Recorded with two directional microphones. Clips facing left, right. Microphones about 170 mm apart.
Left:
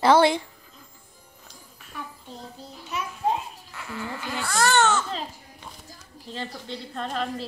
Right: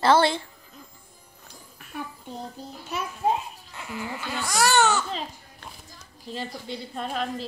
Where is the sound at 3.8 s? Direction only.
15° right (ahead or behind).